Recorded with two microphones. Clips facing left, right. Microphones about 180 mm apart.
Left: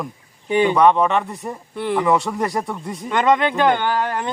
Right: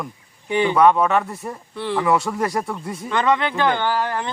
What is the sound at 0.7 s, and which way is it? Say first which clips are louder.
Speech: right 2 dB; 5° right (ahead or behind).